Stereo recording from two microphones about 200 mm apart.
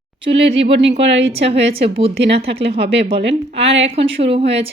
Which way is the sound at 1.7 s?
30° right (ahead or behind).